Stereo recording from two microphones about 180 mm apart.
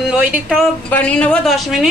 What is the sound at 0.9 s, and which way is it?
Speech, 5° left (ahead or behind).